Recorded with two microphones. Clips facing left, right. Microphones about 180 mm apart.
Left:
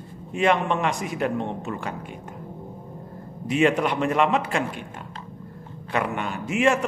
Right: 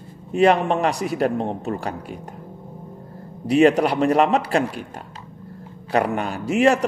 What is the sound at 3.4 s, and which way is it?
A man's voice, 35° right (ahead or behind).